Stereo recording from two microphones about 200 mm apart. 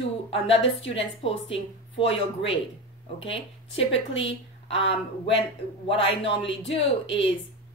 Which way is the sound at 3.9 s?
70° left (ahead or behind).